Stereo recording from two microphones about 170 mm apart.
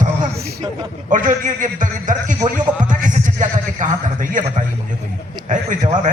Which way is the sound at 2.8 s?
50° right (ahead or behind).